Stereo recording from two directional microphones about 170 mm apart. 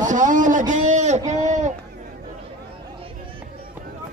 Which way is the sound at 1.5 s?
45° right (ahead or behind).